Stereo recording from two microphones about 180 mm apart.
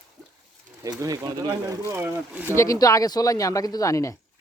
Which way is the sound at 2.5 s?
20° left (ahead or behind).